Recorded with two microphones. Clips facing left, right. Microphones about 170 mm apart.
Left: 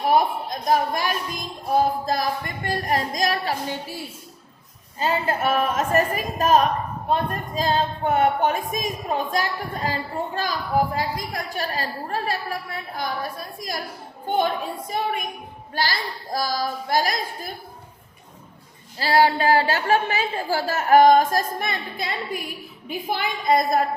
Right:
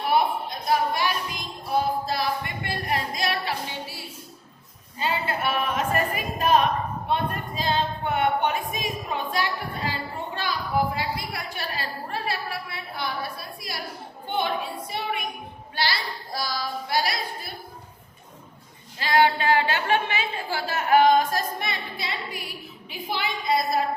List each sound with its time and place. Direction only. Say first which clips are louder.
0.0 s music: left 3 dB; 45° left (ahead or behind)
4.9 s a woman's voice: left 4 dB; 40° left (ahead or behind)
18.9 s a woman's voice: left 2 dB; 35° left (ahead or behind)